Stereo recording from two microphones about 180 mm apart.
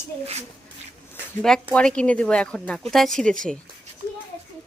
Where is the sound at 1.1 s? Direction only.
5° left (ahead or behind).